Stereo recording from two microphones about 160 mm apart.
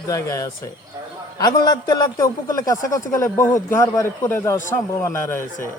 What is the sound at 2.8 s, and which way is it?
Speech, 55° left (ahead or behind).